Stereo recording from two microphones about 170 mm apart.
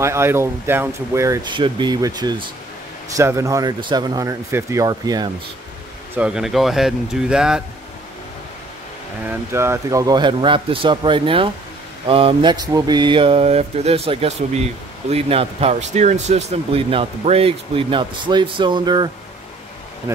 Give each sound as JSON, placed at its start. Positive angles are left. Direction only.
{"t": 0.0, "sound": "speech", "side_deg": -15}
{"t": 6.1, "sound": "speech", "side_deg": -5}
{"t": 9.2, "sound": "speech", "side_deg": -10}